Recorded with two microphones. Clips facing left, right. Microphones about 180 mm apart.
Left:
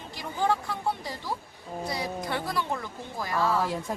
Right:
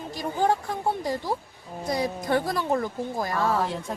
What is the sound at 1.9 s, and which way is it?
Speech, 45° right (ahead or behind).